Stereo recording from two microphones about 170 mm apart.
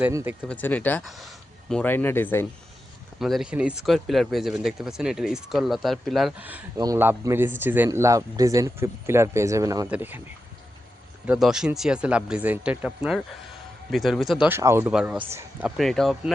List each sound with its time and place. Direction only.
0.0 s speech: 15° right (ahead or behind)
0.4 s speech: 10° left (ahead or behind)
1.0 s speech: centre (ahead or behind)
1.7 s speech: 10° left (ahead or behind)
3.2 s speech: centre (ahead or behind)
6.7 s speech: 20° right (ahead or behind)
11.3 s speech: 5° right (ahead or behind)
14.9 s speech: 5° right (ahead or behind)